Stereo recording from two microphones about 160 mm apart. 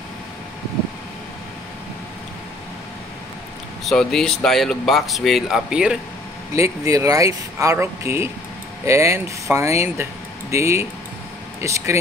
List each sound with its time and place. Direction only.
3.8 s speech: 5° left (ahead or behind)
6.5 s speech: 20° right (ahead or behind)